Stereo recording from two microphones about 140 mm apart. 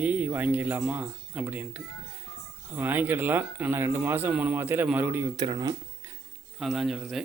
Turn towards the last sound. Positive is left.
turn(degrees=0)  # may be behind; listen again after turning